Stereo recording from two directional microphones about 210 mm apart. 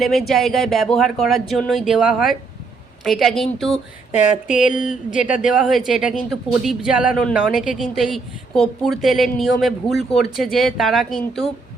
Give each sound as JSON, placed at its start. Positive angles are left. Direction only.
{"t": 0.0, "sound": "speech", "side_deg": 0}
{"t": 4.6, "sound": "speech", "side_deg": 40}
{"t": 4.9, "sound": "speech", "side_deg": -5}